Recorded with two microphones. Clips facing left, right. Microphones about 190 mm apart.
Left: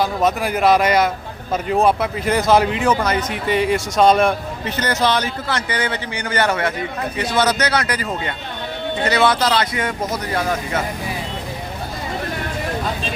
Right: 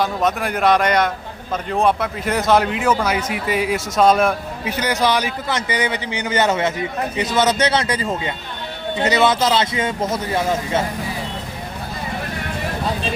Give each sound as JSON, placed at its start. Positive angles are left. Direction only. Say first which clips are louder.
{"t": 0.0, "sound": "a man's voice", "louder": "left 1 dB", "side_deg": 0}
{"t": 9.0, "sound": "speech", "louder": "right 1 dB", "side_deg": -20}